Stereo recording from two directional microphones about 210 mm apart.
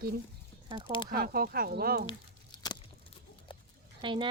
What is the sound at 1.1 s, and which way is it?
Speech, 45° right (ahead or behind).